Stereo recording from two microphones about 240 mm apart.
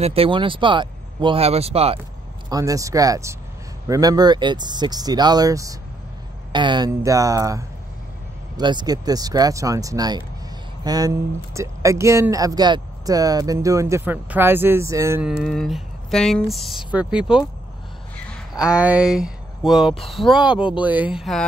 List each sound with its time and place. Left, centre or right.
0.0 s speech: right
2.5 s speech: centre
18.5 s speech: centre